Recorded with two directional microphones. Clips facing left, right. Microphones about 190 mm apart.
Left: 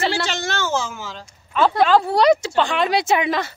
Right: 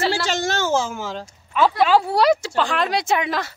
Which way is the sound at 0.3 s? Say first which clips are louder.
Right 3 dB; 45° right (ahead or behind).